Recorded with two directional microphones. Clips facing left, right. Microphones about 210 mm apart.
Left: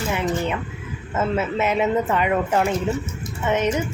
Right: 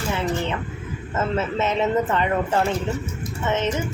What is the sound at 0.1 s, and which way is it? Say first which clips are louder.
Speech: even; 15° left (ahead or behind).